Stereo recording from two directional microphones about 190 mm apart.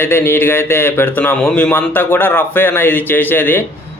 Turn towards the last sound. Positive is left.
turn(degrees=10)  # may be behind; listen again after turning